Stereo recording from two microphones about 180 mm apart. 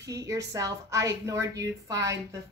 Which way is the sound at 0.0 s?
20° right (ahead or behind).